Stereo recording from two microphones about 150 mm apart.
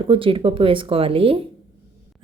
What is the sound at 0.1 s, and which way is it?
Speech, 35° right (ahead or behind).